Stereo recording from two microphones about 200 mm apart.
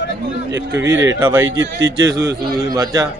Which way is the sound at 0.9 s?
65° right (ahead or behind).